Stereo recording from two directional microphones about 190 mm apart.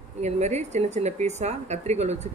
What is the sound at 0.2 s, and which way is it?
Speech, 35° right (ahead or behind).